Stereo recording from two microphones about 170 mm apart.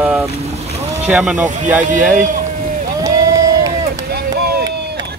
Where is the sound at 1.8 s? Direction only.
50° right (ahead or behind).